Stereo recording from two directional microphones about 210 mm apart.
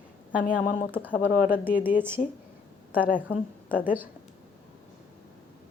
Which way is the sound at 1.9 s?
10° right (ahead or behind).